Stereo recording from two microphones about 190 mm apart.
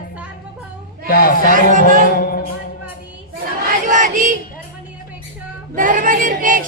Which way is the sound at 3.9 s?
40° right (ahead or behind).